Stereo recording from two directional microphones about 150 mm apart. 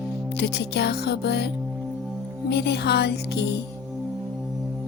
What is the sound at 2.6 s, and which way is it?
Music, 90° left.